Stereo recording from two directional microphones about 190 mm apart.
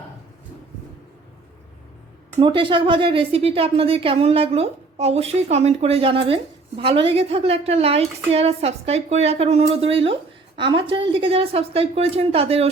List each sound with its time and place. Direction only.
2.4 s a woman's voice: 25° right (ahead or behind)